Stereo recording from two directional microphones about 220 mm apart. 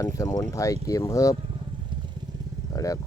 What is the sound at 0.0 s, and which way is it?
Speech, 15° left (ahead or behind).